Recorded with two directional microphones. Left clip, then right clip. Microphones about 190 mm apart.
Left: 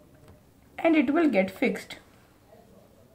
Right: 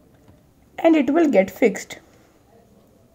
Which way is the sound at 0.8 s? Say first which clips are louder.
Right 6 dB; 45° right (ahead or behind).